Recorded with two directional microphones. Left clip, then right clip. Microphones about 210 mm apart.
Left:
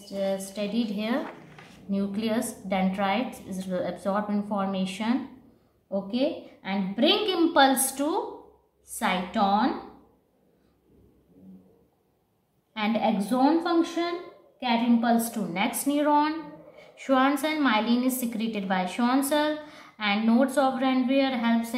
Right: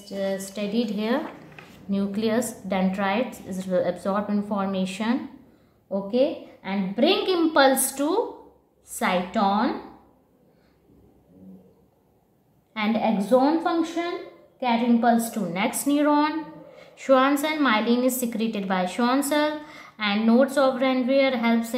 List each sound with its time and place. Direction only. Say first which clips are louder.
0.2 s a woman's voice: right 1 dB; 25° right (ahead or behind)
12.7 s a woman's voice: right 2 dB; 25° right (ahead or behind)